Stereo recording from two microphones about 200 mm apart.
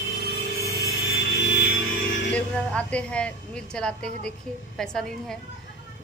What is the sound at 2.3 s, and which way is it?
A woman's voice, 5° left (ahead or behind).